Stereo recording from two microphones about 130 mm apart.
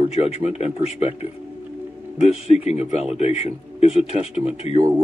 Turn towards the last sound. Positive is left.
turn(degrees=50)  # may be behind; listen again after turning